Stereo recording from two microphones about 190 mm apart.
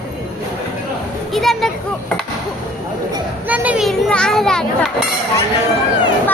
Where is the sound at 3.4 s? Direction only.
10° right (ahead or behind).